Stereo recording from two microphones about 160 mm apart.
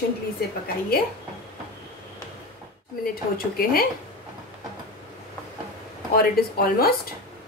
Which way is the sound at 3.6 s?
65° left (ahead or behind).